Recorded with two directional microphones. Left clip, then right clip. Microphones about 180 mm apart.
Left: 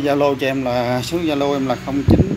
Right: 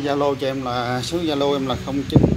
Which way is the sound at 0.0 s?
35° left (ahead or behind).